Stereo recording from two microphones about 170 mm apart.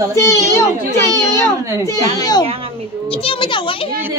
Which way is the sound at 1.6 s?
15° right (ahead or behind).